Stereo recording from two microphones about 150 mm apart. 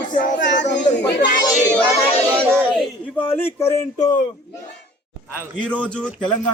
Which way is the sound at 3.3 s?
15° left (ahead or behind).